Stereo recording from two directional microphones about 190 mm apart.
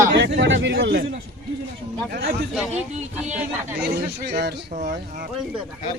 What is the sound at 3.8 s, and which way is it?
Speech, 60° right (ahead or behind).